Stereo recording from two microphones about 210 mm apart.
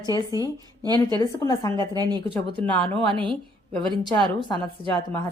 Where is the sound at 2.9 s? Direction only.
25° right (ahead or behind).